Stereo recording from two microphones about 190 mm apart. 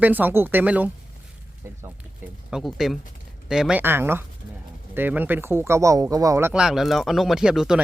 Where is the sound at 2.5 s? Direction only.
Centre (ahead or behind).